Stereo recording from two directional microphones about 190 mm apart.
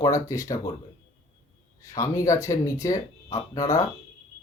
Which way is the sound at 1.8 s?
15° left (ahead or behind).